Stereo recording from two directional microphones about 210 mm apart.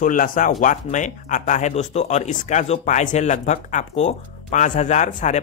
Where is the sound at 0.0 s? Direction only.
40° left (ahead or behind).